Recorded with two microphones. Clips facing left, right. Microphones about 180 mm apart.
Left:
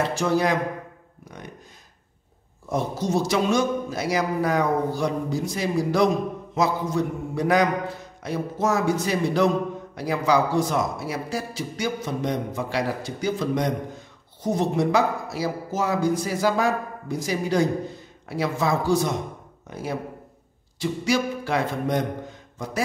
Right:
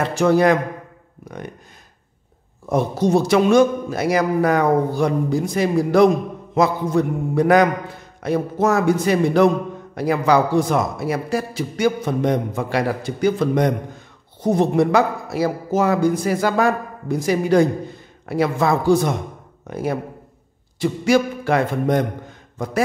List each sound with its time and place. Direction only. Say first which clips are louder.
0.1 s a man's voice: right 7 dB; 55° right (ahead or behind)
2.7 s a man's voice: right 7 dB; 60° right (ahead or behind)